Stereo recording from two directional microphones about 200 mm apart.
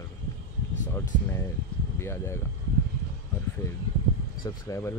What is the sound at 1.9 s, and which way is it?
Speech, 10° left (ahead or behind).